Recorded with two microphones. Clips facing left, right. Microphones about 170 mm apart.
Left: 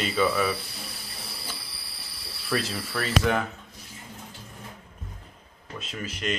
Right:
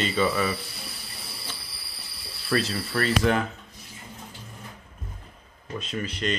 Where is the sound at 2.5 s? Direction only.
5° left (ahead or behind).